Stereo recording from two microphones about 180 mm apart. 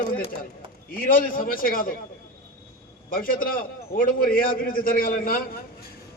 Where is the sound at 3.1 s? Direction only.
50° left (ahead or behind).